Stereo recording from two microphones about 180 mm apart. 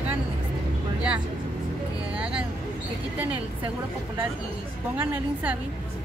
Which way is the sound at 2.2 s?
5° right (ahead or behind).